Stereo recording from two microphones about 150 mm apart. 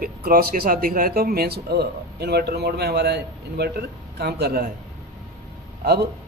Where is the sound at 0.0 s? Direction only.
80° right.